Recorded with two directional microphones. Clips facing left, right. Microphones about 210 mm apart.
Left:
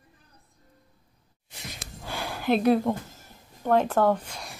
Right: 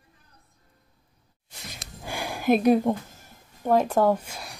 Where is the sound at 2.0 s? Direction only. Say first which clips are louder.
Right 2 dB; 15° right (ahead or behind).